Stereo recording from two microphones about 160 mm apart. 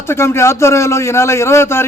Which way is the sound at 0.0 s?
15° left (ahead or behind).